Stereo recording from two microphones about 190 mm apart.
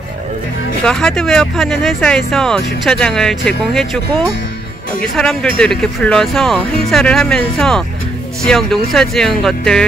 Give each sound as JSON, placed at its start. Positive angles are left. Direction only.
{"t": 0.8, "sound": "speech", "side_deg": 5}
{"t": 5.1, "sound": "speech", "side_deg": 0}